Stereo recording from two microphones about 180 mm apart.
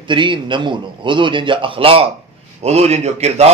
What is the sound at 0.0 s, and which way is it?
A man's voice, 25° right (ahead or behind).